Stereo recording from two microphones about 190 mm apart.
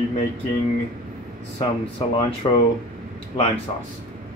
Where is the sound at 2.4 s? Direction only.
25° left (ahead or behind).